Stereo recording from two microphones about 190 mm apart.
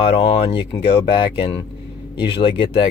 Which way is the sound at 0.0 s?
30° left (ahead or behind).